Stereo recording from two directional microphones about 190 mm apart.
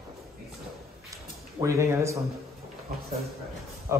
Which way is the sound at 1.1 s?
15° right (ahead or behind).